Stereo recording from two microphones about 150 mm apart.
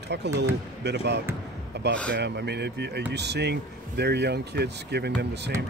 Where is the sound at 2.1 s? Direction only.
90° right.